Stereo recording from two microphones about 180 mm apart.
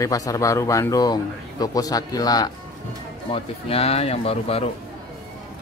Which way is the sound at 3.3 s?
30° left (ahead or behind).